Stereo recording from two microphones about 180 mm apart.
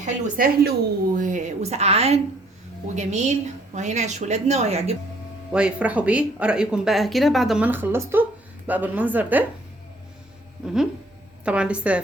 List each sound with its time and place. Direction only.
0.0 s a woman's voice: 50° right (ahead or behind); by 4.9 s 35° right (ahead or behind)
5.5 s speech: 5° right (ahead or behind)
11.4 s speech: 5° right (ahead or behind)